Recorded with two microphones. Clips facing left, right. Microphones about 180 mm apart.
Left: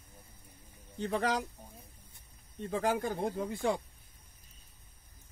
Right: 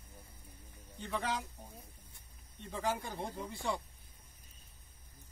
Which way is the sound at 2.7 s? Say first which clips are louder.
Left 6 dB; 50° left (ahead or behind).